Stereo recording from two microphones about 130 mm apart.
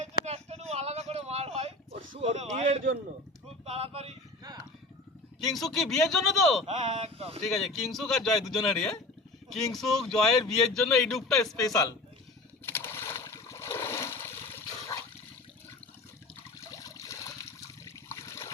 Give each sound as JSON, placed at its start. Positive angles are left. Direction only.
{"t": 0.0, "sound": "a sound", "side_deg": -55}
{"t": 3.7, "sound": "speech", "side_deg": -50}
{"t": 5.5, "sound": "speech", "side_deg": 0}
{"t": 6.8, "sound": "speech", "side_deg": -55}
{"t": 7.4, "sound": "speech", "side_deg": 0}
{"t": 11.7, "sound": "a man's voice", "side_deg": 30}
{"t": 12.6, "sound": "a sound", "side_deg": 20}
{"t": 16.6, "sound": "a sound", "side_deg": 25}
{"t": 17.8, "sound": "water", "side_deg": 20}